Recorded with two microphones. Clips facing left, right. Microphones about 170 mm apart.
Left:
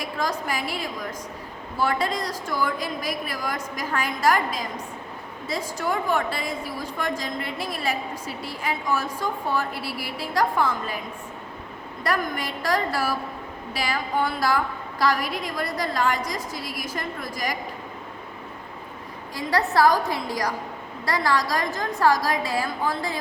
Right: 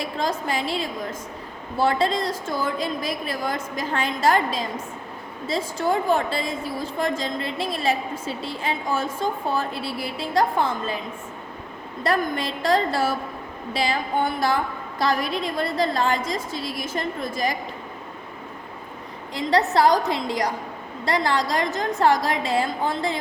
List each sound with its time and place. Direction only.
0.0 s a woman's voice: 25° right (ahead or behind)
12.0 s a woman's voice: 25° right (ahead or behind)
19.3 s a woman's voice: 20° right (ahead or behind)